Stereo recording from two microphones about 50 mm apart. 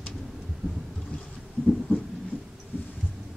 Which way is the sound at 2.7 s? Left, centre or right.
Left.